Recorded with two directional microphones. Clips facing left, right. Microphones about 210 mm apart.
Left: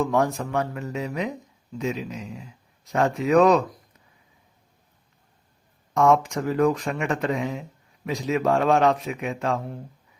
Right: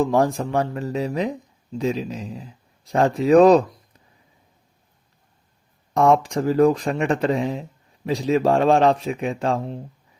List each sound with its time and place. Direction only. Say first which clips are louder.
0.0 s speech: right 4 dB; 35° right (ahead or behind)
5.9 s speech: right 2 dB; 35° right (ahead or behind)